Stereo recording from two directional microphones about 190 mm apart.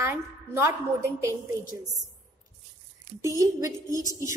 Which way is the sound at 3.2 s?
15° right (ahead or behind).